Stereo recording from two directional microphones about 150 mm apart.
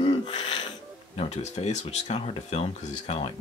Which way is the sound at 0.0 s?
45° left (ahead or behind).